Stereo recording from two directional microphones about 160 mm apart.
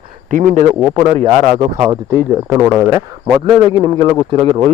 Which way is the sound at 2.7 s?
15° right (ahead or behind).